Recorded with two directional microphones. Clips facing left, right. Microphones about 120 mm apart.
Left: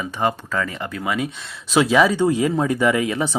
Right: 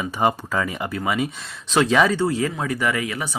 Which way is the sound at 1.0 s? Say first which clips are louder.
Even; centre (ahead or behind).